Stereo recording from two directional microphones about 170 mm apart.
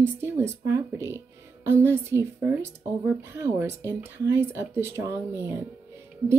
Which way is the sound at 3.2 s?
15° right (ahead or behind).